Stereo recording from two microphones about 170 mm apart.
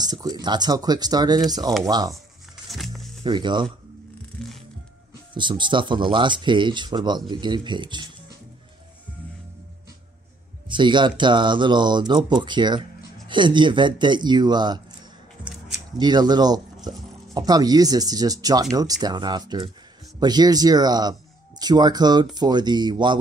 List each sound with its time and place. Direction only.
0.0 s speech: 25° right (ahead or behind)
2.7 s music: centre (ahead or behind)
3.3 s speech: 25° right (ahead or behind)
4.4 s music: 5° left (ahead or behind)
5.3 s speech: 30° right (ahead or behind)
10.7 s speech: 30° right (ahead or behind)
16.0 s speech: 25° right (ahead or behind)